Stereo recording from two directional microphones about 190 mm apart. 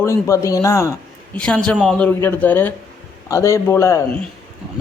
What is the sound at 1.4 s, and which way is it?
A man's voice, 5° left (ahead or behind).